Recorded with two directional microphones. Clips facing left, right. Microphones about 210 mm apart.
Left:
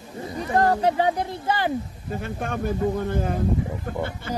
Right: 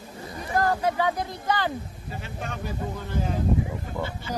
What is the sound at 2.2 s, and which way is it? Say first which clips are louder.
Speech: left 7 dB; 50° left (ahead or behind).